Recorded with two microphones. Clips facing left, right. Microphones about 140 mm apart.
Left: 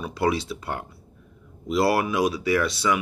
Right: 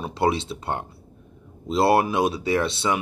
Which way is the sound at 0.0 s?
25° right (ahead or behind).